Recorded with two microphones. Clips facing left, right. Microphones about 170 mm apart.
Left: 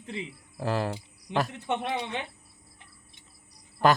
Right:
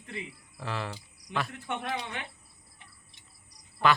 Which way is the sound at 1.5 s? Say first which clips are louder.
Left 4 dB; 20° left (ahead or behind).